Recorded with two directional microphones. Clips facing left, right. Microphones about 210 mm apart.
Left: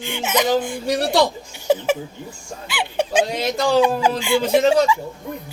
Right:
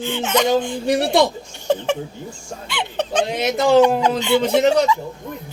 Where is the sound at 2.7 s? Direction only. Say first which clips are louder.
Left 2 dB; 5° left (ahead or behind).